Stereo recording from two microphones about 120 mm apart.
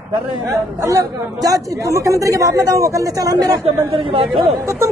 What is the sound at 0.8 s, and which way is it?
A man's voice, 30° right (ahead or behind).